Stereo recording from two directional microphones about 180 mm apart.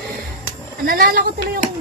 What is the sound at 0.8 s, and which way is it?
Speech, 55° right (ahead or behind).